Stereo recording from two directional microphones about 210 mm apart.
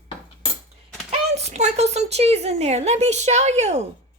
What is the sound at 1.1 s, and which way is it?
A woman's voice, 30° right (ahead or behind).